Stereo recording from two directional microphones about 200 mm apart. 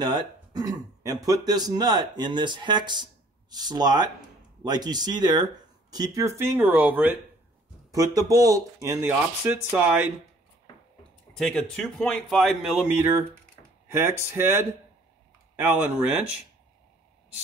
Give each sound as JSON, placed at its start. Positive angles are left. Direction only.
{"t": 0.0, "sound": "speech", "side_deg": -20}
{"t": 11.3, "sound": "speech", "side_deg": 0}